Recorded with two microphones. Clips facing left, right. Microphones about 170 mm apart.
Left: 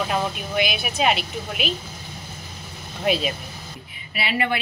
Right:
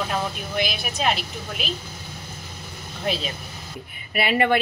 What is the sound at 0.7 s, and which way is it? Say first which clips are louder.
A woman's voice: left 3 dB; 5° left (ahead or behind).